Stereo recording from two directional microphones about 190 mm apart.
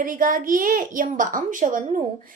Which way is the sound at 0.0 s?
45° right (ahead or behind).